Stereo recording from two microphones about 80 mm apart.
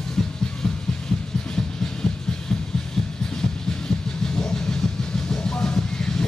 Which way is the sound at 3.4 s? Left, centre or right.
Centre.